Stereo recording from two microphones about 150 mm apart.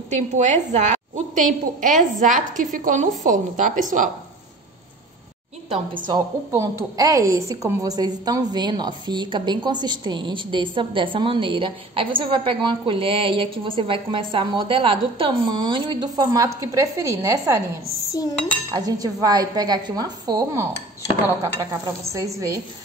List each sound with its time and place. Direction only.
0.1 s a woman's voice: 50° right (ahead or behind)
6.1 s a woman's voice: 20° right (ahead or behind)
18.7 s speech: 25° right (ahead or behind)
22.1 s speech: 20° right (ahead or behind)